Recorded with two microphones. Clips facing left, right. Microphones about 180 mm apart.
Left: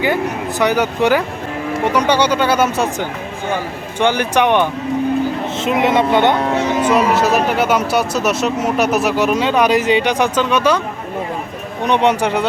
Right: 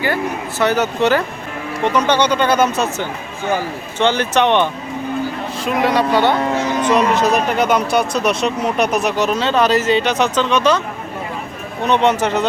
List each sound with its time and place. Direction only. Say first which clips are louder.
0.6 s speech: even; 15° left (ahead or behind)
5.5 s speech: left 1 dB; 20° left (ahead or behind)
6.4 s speech: left 2 dB; centre (ahead or behind)
11.9 s speech: even; 10° left (ahead or behind)